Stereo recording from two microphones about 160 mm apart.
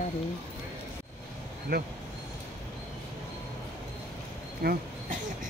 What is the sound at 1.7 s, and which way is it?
Speech, 70° right (ahead or behind).